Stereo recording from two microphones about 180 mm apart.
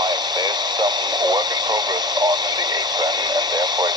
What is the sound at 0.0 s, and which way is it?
Speech, 25° right (ahead or behind).